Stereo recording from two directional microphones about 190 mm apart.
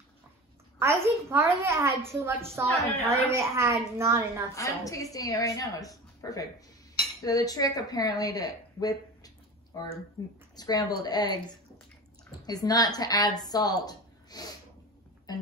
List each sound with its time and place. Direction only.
0.7 s a child's voice: 10° right (ahead or behind)
4.6 s a woman's voice: 15° left (ahead or behind)
12.4 s a woman's voice: 20° left (ahead or behind)
15.3 s a sound: 20° left (ahead or behind)